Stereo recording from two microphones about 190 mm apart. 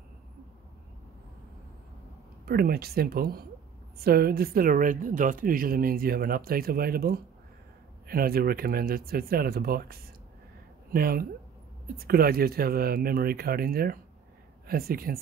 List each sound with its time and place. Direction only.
2.4 s a woman's voice: 55° right (ahead or behind)